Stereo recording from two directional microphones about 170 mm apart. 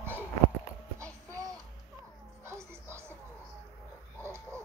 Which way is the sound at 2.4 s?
15° right (ahead or behind).